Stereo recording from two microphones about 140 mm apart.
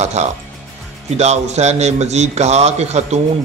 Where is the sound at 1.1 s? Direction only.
50° right (ahead or behind).